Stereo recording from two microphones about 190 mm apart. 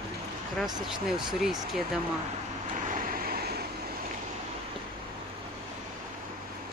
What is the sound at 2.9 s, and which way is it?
Vehicle, 50° right (ahead or behind).